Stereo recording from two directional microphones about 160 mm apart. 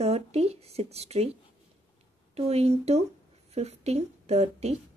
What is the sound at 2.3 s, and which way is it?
Speech, 40° right (ahead or behind).